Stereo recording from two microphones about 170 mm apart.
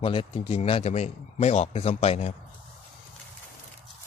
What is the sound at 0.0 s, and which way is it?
Speech, 30° left (ahead or behind).